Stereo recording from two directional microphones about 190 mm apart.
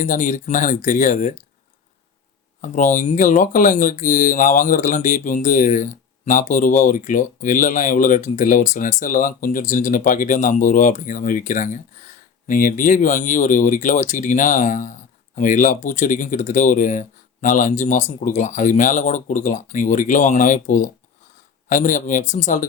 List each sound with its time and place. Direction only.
0.0 s speech: 40° left (ahead or behind)
2.6 s speech: 40° left (ahead or behind)